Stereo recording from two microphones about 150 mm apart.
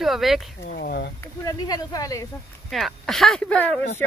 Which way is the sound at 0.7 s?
90° left.